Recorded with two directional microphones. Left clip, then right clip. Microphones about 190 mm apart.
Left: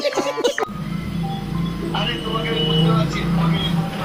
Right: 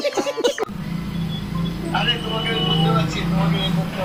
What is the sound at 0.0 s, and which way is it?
Music, centre (ahead or behind).